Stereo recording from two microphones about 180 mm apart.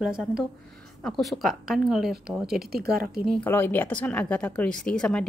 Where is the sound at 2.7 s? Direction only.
55° right (ahead or behind).